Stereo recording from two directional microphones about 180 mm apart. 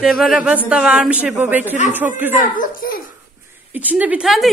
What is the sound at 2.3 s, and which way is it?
Speech, 45° left (ahead or behind).